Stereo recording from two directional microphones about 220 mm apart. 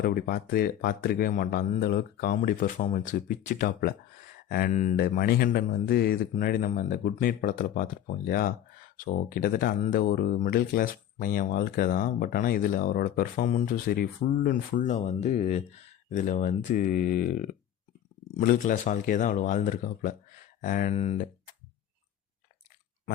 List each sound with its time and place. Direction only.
0.0 s speech: 45° left (ahead or behind)